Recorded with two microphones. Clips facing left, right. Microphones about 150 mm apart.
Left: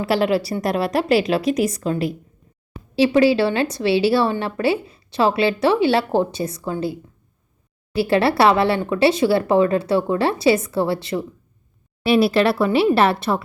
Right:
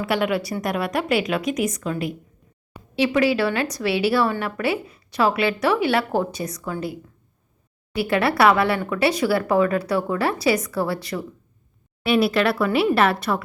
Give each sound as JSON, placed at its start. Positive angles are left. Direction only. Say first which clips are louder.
{"t": 0.0, "sound": "a woman's voice", "louder": "left 4 dB", "side_deg": 30}